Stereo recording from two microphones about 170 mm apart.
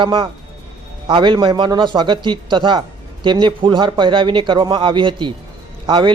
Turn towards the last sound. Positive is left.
turn(degrees=-30)  # may be behind; listen again after turning